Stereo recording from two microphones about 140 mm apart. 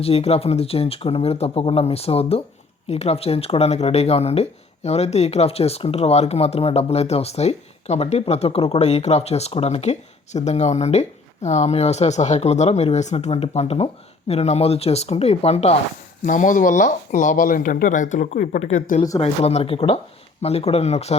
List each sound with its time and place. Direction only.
0.0 s speech: 45° left (ahead or behind)
16.2 s speech: 65° left (ahead or behind)
18.6 s speech: 55° left (ahead or behind)